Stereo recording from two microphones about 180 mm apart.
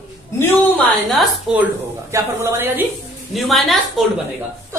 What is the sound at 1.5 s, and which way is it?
Speech, 5° right (ahead or behind).